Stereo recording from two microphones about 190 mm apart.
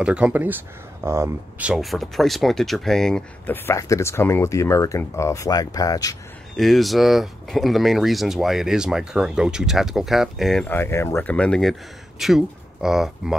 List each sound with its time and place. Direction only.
0.0 s speech: 5° right (ahead or behind); by 6.1 s 20° left (ahead or behind)
6.5 s speech: centre (ahead or behind)